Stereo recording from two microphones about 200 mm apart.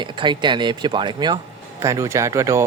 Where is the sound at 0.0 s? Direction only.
25° right (ahead or behind).